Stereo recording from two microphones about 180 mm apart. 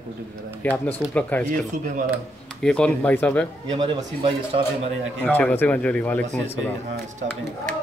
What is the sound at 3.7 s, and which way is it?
Speech, 25° right (ahead or behind).